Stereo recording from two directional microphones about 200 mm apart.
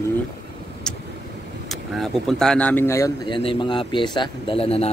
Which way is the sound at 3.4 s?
25° left (ahead or behind).